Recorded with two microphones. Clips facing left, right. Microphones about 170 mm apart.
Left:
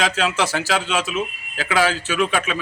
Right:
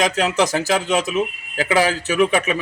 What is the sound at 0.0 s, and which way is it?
A man's voice, 20° right (ahead or behind).